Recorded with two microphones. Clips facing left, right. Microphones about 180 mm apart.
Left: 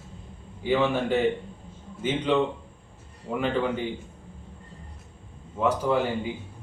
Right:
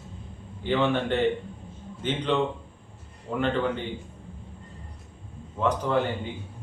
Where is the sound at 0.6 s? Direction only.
10° left (ahead or behind).